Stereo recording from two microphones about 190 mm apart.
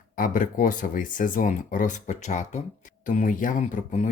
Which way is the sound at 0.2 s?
45° left (ahead or behind).